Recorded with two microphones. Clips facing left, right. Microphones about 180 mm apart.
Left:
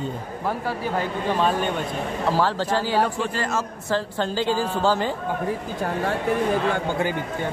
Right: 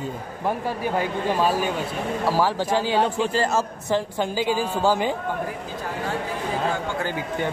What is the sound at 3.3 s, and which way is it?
Speech, 30° right (ahead or behind).